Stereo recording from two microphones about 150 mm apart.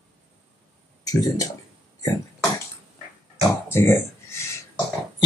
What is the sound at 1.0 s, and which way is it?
Speech, 25° left (ahead or behind).